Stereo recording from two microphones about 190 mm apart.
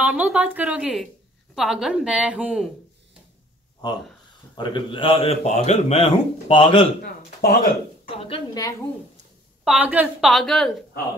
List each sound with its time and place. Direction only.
0.0 s a woman's voice: 10° right (ahead or behind)
4.6 s a man's voice: 25° left (ahead or behind)
7.0 s speech: 50° left (ahead or behind)
8.3 s a man's voice: 20° left (ahead or behind)
9.7 s speech: 10° right (ahead or behind)
10.3 s a woman's voice: centre (ahead or behind)